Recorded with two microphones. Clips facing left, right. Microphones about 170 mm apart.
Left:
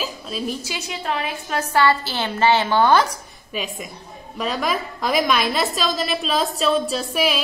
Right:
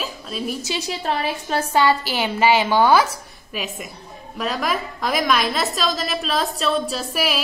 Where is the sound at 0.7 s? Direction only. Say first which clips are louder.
Right 2 dB; 35° right (ahead or behind).